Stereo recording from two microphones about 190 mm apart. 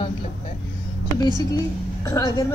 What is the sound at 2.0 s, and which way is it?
Speech, 20° left (ahead or behind).